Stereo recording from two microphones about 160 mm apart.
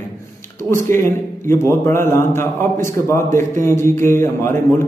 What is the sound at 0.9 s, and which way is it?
A man's voice, 15° left (ahead or behind).